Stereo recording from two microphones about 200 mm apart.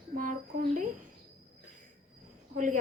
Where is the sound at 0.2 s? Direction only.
40° right (ahead or behind).